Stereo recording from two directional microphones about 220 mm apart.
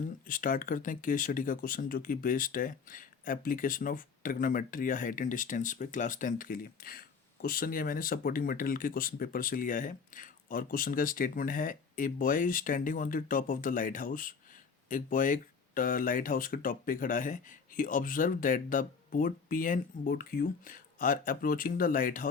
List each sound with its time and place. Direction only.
0.3 s speech: 40° left (ahead or behind)